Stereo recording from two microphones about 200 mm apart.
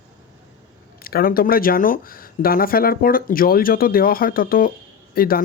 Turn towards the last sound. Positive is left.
turn(degrees=50)  # may be behind; listen again after turning